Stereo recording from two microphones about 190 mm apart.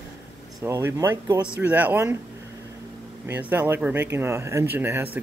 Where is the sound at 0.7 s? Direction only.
15° right (ahead or behind).